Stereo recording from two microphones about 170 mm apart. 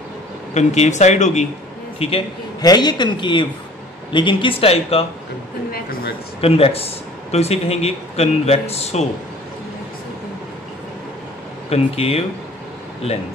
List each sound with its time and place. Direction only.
0.6 s a man's voice: 45° left (ahead or behind)
5.7 s speech: 65° left (ahead or behind)
6.4 s speech: 35° left (ahead or behind)
11.7 s speech: 35° left (ahead or behind)